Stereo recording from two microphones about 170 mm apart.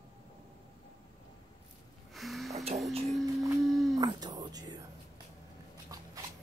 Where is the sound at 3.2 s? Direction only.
20° right (ahead or behind).